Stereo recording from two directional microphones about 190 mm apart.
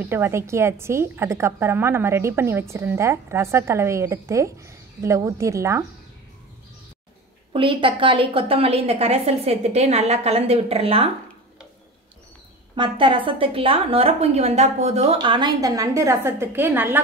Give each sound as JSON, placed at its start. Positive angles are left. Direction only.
{"t": 0.0, "sound": "a woman's voice", "side_deg": -10}
{"t": 7.5, "sound": "a woman's voice", "side_deg": -25}
{"t": 12.7, "sound": "a woman's voice", "side_deg": -25}